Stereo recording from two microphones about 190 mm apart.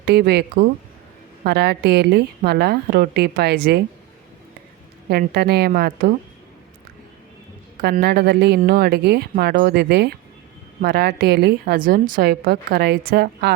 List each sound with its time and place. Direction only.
0.0 s a woman's voice: 60° right (ahead or behind)
5.0 s a woman's voice: 55° right (ahead or behind)
7.8 s a woman's voice: 55° right (ahead or behind)